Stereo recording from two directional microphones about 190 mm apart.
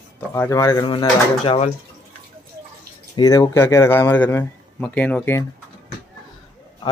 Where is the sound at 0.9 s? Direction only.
25° left (ahead or behind).